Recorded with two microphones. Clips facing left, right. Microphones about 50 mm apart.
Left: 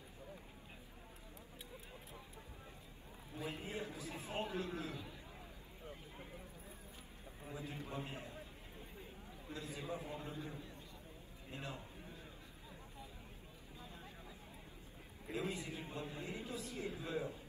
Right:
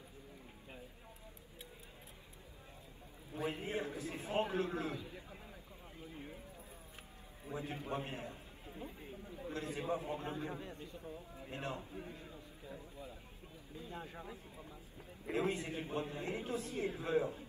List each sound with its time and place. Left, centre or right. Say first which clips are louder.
3.3 s a man's voice: right 5 dB; right
7.5 s a man's voice: right 5 dB; right
10.3 s a man's voice: right 5 dB; right
11.5 s a sound: right 5 dB; right
13.8 s a sound: right 9 dB; right
15.2 s a man's voice: right 6 dB; right